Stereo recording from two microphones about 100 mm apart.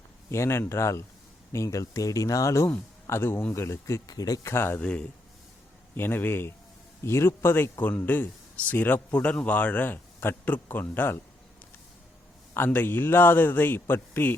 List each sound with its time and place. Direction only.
0.3 s speech: 25° left (ahead or behind)
4.5 s speech: 25° left (ahead or behind)
4.8 s a man's voice: 10° left (ahead or behind)
12.5 s speech: 20° left (ahead or behind)